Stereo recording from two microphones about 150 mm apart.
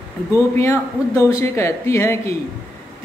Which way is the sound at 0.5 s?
15° left (ahead or behind).